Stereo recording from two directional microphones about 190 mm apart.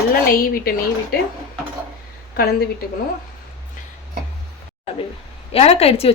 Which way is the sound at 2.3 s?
55° left (ahead or behind).